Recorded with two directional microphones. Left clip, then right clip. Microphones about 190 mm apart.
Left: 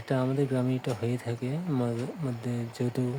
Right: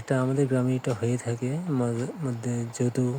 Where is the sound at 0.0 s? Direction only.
15° right (ahead or behind).